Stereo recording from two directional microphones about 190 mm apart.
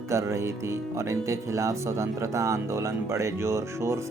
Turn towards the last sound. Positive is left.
turn(degrees=-15)  # may be behind; listen again after turning